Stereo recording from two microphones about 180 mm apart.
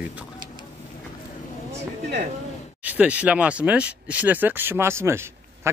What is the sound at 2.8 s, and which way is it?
A woman's voice, 10° right (ahead or behind).